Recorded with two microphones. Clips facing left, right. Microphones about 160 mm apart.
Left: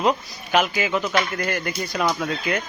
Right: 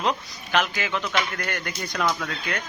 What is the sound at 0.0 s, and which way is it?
Speech, 10° left (ahead or behind).